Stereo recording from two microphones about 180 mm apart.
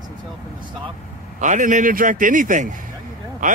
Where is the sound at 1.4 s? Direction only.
45° right (ahead or behind).